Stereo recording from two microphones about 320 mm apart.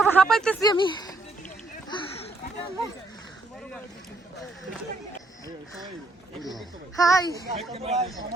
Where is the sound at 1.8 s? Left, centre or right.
Centre.